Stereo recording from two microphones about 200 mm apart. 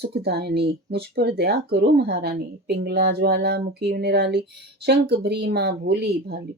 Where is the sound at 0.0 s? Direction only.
55° right (ahead or behind).